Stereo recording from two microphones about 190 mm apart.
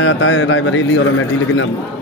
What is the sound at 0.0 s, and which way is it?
A man's voice, 90° left.